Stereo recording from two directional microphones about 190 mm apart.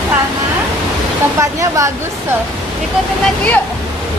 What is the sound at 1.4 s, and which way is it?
Speech, 15° right (ahead or behind).